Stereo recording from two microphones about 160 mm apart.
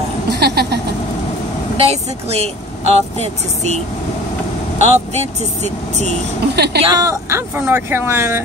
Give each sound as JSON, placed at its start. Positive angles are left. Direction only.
{"t": 0.3, "sound": "a sound", "side_deg": -90}
{"t": 1.8, "sound": "speech", "side_deg": -40}
{"t": 4.8, "sound": "speech", "side_deg": -45}
{"t": 6.5, "sound": "speech", "side_deg": -90}
{"t": 6.9, "sound": "speech", "side_deg": -20}